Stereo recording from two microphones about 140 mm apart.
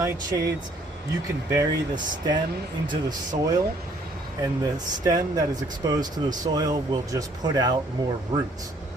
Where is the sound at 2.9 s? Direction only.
30° right (ahead or behind).